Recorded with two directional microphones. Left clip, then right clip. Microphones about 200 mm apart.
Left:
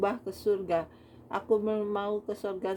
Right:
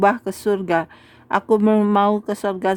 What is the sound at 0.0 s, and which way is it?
Speech, 45° right (ahead or behind).